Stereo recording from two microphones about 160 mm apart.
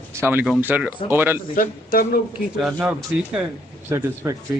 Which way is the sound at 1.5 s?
65° left (ahead or behind).